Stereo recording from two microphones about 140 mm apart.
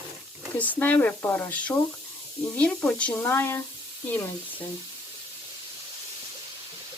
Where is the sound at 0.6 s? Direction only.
10° left (ahead or behind).